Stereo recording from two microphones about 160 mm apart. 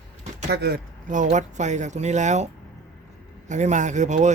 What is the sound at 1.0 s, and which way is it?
Speech, 50° right (ahead or behind).